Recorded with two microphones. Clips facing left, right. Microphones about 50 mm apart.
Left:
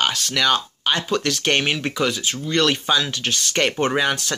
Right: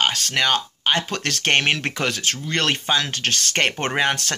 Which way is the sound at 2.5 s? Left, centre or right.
Right.